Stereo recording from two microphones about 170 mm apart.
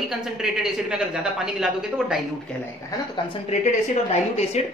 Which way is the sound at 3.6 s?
40° left (ahead or behind).